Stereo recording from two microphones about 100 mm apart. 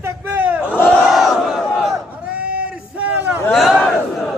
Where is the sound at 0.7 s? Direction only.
5° right (ahead or behind).